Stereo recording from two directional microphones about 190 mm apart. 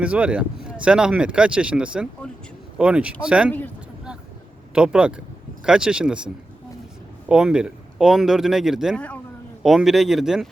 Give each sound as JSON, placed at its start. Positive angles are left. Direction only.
{"t": 0.0, "sound": "speech", "side_deg": -5}
{"t": 4.7, "sound": "speech", "side_deg": -5}